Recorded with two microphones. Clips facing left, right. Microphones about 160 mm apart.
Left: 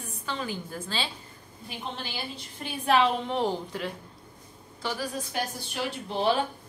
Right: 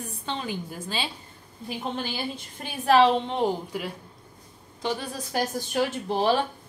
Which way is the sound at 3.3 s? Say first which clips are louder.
Right 2 dB; 15° right (ahead or behind).